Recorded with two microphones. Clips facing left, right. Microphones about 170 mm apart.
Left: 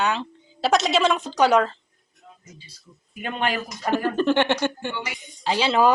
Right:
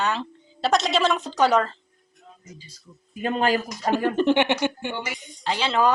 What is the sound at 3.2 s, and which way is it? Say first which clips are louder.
Speech: right 4 dB; 35° right (ahead or behind).